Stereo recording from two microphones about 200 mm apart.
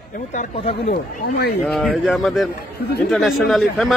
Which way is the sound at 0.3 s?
35° left (ahead or behind).